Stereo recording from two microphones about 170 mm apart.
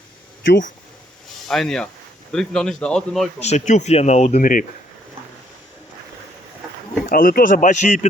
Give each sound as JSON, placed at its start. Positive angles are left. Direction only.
{"t": 1.5, "sound": "speech", "side_deg": 0}
{"t": 3.4, "sound": "speech", "side_deg": 40}
{"t": 7.1, "sound": "speech", "side_deg": 55}